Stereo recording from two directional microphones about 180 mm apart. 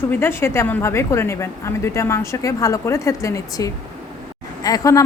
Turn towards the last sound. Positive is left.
turn(degrees=20)  # may be behind; listen again after turning